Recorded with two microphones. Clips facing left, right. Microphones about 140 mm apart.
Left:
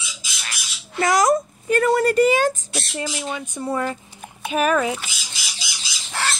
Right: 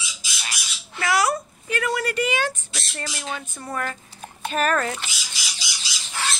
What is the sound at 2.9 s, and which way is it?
Speech, 10° left (ahead or behind).